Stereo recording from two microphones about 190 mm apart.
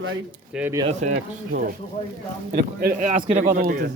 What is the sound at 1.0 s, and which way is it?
Speech, 40° right (ahead or behind).